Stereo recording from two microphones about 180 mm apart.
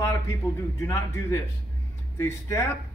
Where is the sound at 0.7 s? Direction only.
15° left (ahead or behind).